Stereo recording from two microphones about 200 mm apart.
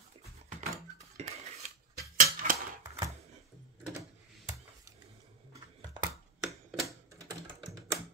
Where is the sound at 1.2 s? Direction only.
35° right (ahead or behind).